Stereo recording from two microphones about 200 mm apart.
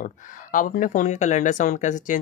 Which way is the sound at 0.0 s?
40° left (ahead or behind).